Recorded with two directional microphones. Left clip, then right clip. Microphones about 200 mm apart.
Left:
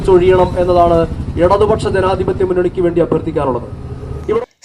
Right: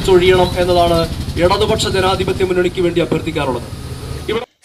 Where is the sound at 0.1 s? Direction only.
45° right (ahead or behind).